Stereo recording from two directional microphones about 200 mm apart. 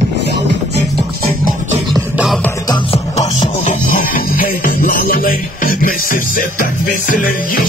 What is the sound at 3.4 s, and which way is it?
Music, 40° left (ahead or behind).